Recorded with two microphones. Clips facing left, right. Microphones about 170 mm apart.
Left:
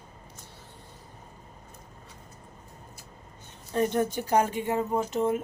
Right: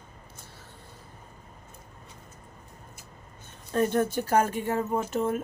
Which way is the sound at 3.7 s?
15° left (ahead or behind).